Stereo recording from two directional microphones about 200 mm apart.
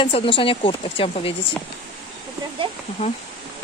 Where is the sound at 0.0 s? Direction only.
25° left (ahead or behind).